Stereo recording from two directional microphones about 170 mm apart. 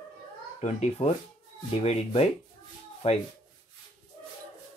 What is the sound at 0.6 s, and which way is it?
Speech, 45° left (ahead or behind).